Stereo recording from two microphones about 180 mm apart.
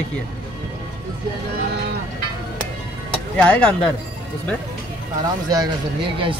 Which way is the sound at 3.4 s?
10° left (ahead or behind).